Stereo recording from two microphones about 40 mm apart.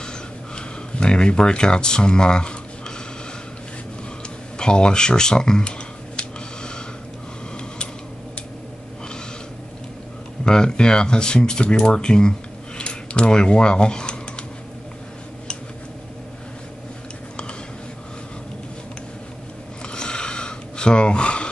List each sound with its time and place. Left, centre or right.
0.6 s speech: left
4.6 s computer keyboard: left
10.4 s speech: centre
19.9 s a sound: left